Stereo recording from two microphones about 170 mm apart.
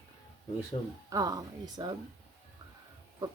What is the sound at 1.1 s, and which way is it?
Speech, 20° right (ahead or behind).